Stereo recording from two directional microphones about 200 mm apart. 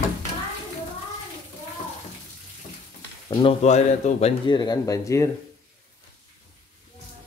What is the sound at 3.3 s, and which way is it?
Speech, 30° left (ahead or behind).